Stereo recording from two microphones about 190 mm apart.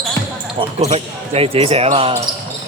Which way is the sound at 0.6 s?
35° right (ahead or behind).